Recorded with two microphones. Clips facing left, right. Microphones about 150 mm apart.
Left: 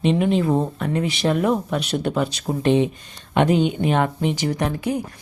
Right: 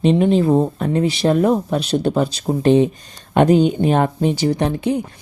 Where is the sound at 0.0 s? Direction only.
35° right (ahead or behind).